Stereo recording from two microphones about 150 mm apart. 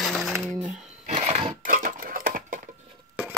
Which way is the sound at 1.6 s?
65° right (ahead or behind).